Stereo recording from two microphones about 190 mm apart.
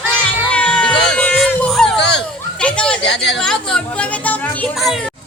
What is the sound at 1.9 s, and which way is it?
Children playing, 65° left (ahead or behind).